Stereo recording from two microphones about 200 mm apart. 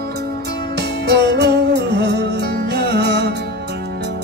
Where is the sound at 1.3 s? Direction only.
55° right (ahead or behind).